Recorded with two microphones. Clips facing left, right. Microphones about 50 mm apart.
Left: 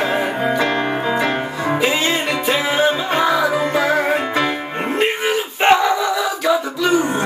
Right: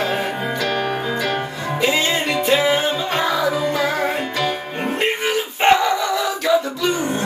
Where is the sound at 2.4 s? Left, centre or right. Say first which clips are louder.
Even; centre.